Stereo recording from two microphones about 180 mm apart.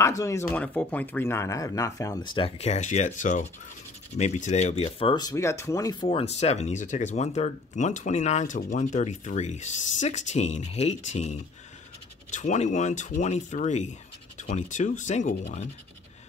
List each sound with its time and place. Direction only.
0.0 s speech: 15° left (ahead or behind)
6.0 s speech: 35° left (ahead or behind)